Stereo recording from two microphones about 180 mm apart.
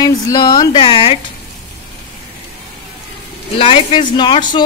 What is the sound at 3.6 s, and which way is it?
A woman's voice, 30° left (ahead or behind).